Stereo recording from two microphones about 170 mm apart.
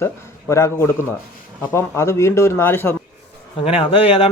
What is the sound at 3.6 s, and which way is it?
Speech, 30° left (ahead or behind).